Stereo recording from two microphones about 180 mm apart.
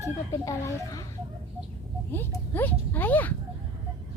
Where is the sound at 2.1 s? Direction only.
10° left (ahead or behind).